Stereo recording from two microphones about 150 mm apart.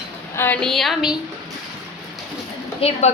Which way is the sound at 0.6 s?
Centre (ahead or behind).